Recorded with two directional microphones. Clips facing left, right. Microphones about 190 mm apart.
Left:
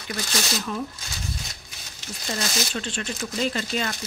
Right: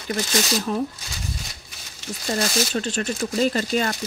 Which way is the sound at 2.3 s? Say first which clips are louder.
Right 5 dB; 40° right (ahead or behind).